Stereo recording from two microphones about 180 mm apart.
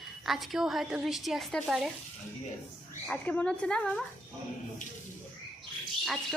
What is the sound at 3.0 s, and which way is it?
Speech, 10° left (ahead or behind).